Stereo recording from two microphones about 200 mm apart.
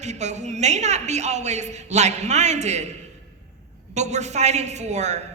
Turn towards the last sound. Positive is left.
turn(degrees=-35)  # may be behind; listen again after turning